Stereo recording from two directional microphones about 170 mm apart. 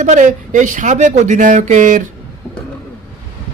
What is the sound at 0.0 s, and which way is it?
A woman's voice, 45° right (ahead or behind).